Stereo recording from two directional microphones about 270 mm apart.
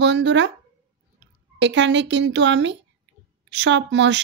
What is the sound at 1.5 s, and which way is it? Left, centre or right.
Speech, right.